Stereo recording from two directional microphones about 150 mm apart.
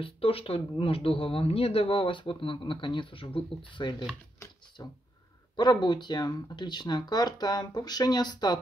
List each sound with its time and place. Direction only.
0.0 s speech: 40° left (ahead or behind)